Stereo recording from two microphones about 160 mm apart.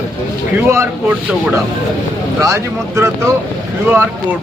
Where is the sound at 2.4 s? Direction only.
20° right (ahead or behind).